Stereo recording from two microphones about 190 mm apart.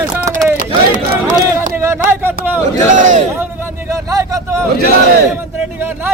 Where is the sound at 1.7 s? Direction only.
10° right (ahead or behind).